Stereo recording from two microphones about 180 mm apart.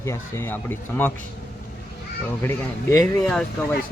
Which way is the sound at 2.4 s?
15° left (ahead or behind).